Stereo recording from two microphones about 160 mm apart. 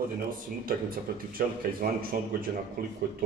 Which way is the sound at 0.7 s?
65° right (ahead or behind).